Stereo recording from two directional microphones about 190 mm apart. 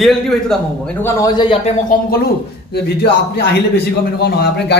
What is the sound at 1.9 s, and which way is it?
Speech, 50° left (ahead or behind).